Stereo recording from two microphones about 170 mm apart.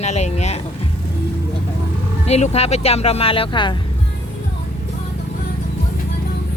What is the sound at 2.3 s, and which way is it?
Speech, 40° left (ahead or behind).